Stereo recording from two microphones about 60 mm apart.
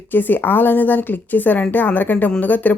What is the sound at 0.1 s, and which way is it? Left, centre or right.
A woman's voice, left.